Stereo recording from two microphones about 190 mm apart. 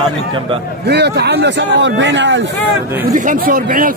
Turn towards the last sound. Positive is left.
turn(degrees=-45)  # may be behind; listen again after turning